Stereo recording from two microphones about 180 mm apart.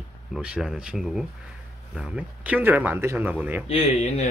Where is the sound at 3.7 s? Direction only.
35° left (ahead or behind).